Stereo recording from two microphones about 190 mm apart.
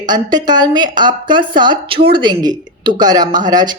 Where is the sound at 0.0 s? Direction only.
20° right (ahead or behind).